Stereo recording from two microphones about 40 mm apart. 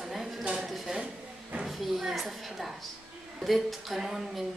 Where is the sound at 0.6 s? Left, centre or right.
Centre.